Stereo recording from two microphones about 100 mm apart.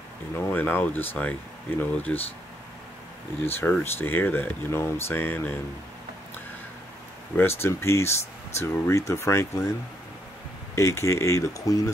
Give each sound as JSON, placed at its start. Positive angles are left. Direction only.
{"t": 0.5, "sound": "speech", "side_deg": 20}
{"t": 3.5, "sound": "speech", "side_deg": 20}
{"t": 7.3, "sound": "speech", "side_deg": 25}
{"t": 10.8, "sound": "speech", "side_deg": 30}